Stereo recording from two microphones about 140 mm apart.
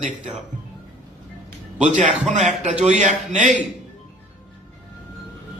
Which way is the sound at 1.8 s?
60° right (ahead or behind).